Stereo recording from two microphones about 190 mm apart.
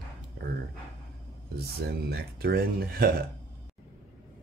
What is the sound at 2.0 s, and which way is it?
Speech, 55° right (ahead or behind).